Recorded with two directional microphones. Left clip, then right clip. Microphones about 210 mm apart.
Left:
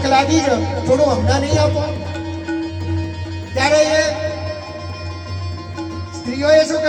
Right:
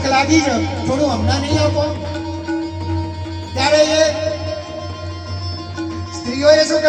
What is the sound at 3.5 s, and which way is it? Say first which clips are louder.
Music: even; 40° right (ahead or behind).